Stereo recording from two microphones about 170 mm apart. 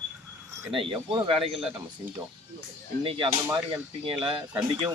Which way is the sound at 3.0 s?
30° right (ahead or behind).